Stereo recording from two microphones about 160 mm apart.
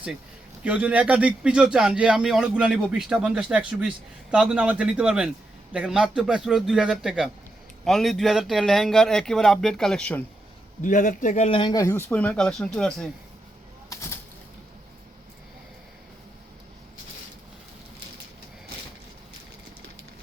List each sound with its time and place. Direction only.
0.6 s a man's voice: 10° right (ahead or behind); by 10.2 s 10° left (ahead or behind)
10.8 s a man's voice: 55° left (ahead or behind)
11.4 s speech: 30° left (ahead or behind); by 13.1 s 5° left (ahead or behind)